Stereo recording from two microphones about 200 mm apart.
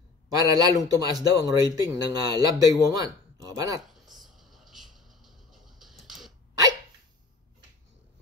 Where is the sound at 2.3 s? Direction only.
20° right (ahead or behind).